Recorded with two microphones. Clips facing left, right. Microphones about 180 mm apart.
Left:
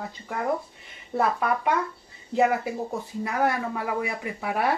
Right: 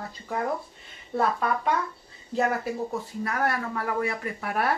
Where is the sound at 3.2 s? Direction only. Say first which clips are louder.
Left 3 dB; 15° left (ahead or behind).